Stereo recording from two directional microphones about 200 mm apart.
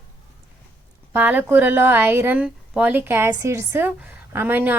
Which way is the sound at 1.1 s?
10° right (ahead or behind).